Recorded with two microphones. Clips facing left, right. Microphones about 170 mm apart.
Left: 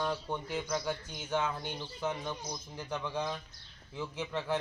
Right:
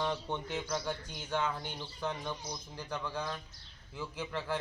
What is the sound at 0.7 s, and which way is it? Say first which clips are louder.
Speech: left 2 dB; 15° left (ahead or behind).